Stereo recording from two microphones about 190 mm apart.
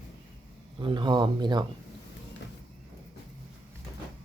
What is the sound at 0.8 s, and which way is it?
Speech, 25° right (ahead or behind).